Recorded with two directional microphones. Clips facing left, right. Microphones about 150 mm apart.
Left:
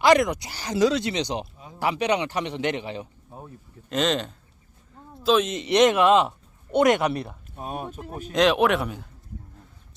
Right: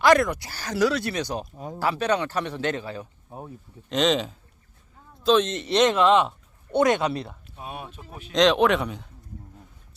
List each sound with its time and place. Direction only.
0.0 s speech: 15° left (ahead or behind)
1.5 s speech: 45° right (ahead or behind)
1.8 s a man's voice: 15° left (ahead or behind)
3.2 s speech: 20° right (ahead or behind)
3.8 s speech: centre (ahead or behind); by 7.1 s 20° left (ahead or behind)
7.5 s speech: 45° left (ahead or behind)
8.3 s speech: 5° left (ahead or behind)